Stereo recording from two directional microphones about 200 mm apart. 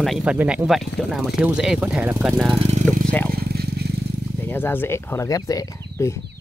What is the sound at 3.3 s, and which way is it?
Vehicle, 50° right (ahead or behind).